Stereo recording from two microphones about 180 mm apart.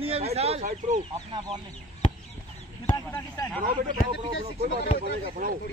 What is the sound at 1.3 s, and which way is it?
Speech, 25° right (ahead or behind).